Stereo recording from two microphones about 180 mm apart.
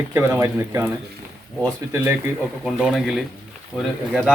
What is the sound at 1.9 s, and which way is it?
Speech, 15° right (ahead or behind).